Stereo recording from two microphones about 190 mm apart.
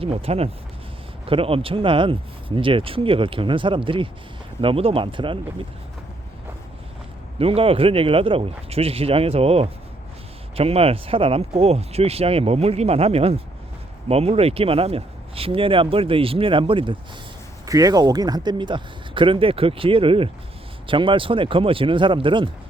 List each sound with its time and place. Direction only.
0.0 s speech: 30° right (ahead or behind)
7.3 s speech: 30° right (ahead or behind)